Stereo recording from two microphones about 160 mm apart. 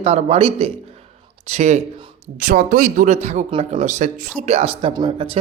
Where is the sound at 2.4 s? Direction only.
60° right (ahead or behind).